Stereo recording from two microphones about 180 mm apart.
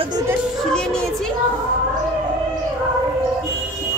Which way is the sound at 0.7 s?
5° left (ahead or behind).